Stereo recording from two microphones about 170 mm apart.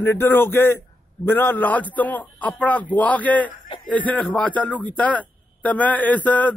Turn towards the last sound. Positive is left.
turn(degrees=10)  # may be behind; listen again after turning